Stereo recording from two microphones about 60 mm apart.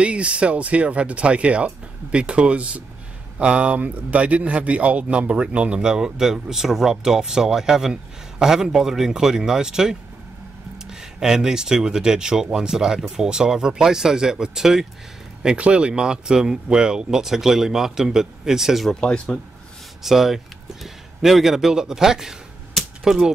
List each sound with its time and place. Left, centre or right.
0.0 s speech: centre
15.4 s speech: centre
18.9 s speech: centre
20.0 s speech: centre